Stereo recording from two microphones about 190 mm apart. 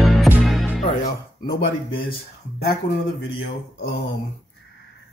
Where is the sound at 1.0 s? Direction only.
55° left (ahead or behind).